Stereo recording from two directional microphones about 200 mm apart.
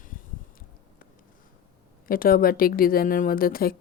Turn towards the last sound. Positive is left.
turn(degrees=45)  # may be behind; listen again after turning